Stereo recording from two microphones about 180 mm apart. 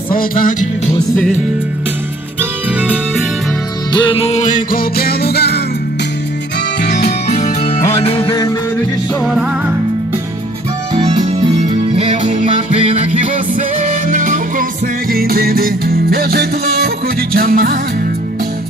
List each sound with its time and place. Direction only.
0.1 s music: 50° left (ahead or behind)
3.9 s music: 30° left (ahead or behind); by 5.6 s 65° left (ahead or behind)
6.8 s music: 60° left (ahead or behind)
7.3 s music: 40° left (ahead or behind); by 8.5 s 20° left (ahead or behind)
9.2 s music: centre (ahead or behind)
11.0 s music: 35° right (ahead or behind); by 17.7 s 55° right (ahead or behind)